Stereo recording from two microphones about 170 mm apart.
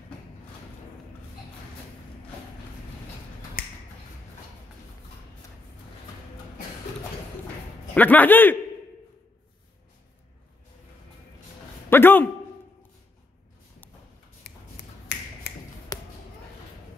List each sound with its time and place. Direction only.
3.6 s finger snapping: 55° left (ahead or behind)
7.9 s a man's voice: 10° left (ahead or behind)
11.9 s a sound: 10° left (ahead or behind)
15.1 s finger snapping: 90° left
15.9 s basketball bounce: 20° left (ahead or behind)